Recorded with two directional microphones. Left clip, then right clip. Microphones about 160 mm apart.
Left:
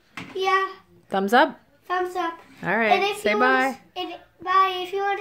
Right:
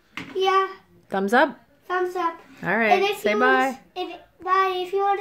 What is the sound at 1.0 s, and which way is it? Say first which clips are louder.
Child singing: left 1 dB; 10° left (ahead or behind).